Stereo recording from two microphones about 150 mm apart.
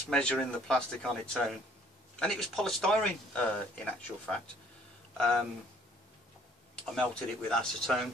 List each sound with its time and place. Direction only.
0.1 s speech: 5° left (ahead or behind)
6.7 s speech: 5° left (ahead or behind)